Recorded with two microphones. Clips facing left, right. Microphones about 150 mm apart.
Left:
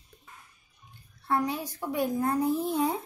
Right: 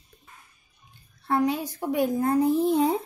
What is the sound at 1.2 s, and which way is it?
A child's voice, 25° right (ahead or behind).